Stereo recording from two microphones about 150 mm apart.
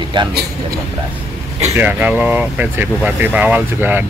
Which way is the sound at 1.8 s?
10° right (ahead or behind).